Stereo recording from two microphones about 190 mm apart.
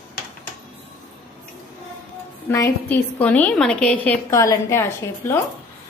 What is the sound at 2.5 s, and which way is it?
A woman's voice, 15° left (ahead or behind).